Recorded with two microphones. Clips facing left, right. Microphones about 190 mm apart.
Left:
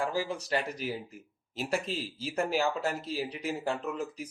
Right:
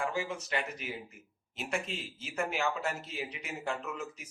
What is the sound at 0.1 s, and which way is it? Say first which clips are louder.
Speech: left 4 dB; 35° left (ahead or behind).